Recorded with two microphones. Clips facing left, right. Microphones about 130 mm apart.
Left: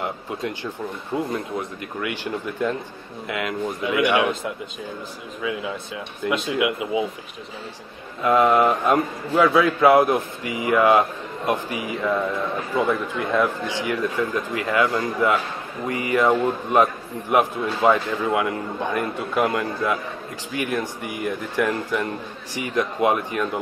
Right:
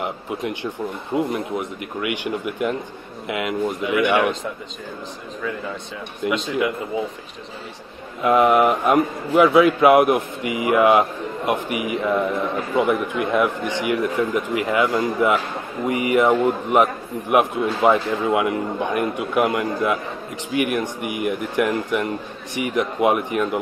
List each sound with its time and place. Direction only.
0.0 s a man's voice: 20° right (ahead or behind)
4.0 s speech: 10° left (ahead or behind)
5.4 s speech: 5° left (ahead or behind)
8.2 s a man's voice: 20° right (ahead or behind)